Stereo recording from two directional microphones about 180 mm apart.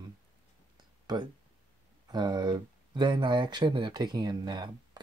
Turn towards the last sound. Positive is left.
turn(degrees=-25)  # may be behind; listen again after turning